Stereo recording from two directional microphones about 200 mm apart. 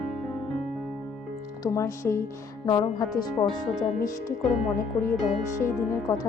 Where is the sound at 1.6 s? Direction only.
15° left (ahead or behind).